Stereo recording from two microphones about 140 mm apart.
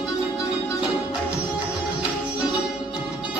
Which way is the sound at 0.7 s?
35° left (ahead or behind).